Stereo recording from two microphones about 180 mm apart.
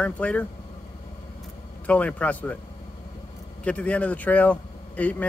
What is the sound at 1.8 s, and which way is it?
Speech, 5° left (ahead or behind).